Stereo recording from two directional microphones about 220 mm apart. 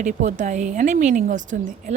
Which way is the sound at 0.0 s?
35° right (ahead or behind).